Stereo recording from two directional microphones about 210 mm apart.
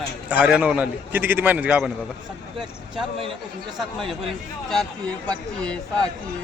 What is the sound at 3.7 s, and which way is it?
Speech, centre (ahead or behind).